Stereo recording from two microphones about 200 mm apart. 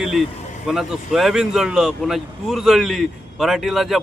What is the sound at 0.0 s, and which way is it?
Speech, centre (ahead or behind).